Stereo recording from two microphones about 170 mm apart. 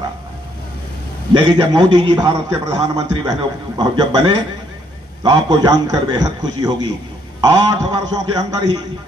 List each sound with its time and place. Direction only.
1.4 s a man's voice: 25° right (ahead or behind)
5.2 s a man's voice: 25° right (ahead or behind)